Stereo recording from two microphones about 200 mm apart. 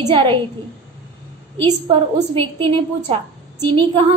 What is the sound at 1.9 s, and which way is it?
A woman's voice, 30° right (ahead or behind).